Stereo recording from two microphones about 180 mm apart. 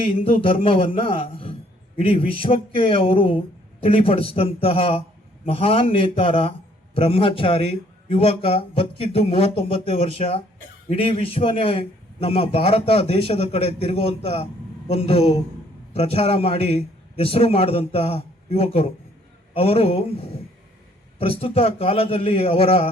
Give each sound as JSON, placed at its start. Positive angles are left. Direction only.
{"t": 0.0, "sound": "a man's voice", "side_deg": 30}